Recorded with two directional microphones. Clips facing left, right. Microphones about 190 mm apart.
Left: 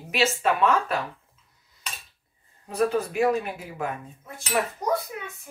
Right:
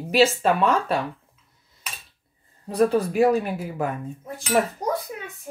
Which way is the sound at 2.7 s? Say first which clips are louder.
Right 4 dB; 35° right (ahead or behind).